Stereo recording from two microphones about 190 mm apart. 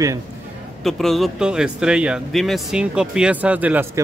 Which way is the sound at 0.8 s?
Centre (ahead or behind).